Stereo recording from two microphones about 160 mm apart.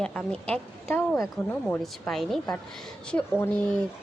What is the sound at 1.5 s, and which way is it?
A woman's voice, 5° left (ahead or behind).